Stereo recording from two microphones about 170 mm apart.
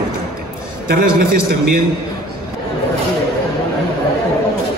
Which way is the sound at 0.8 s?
65° right (ahead or behind).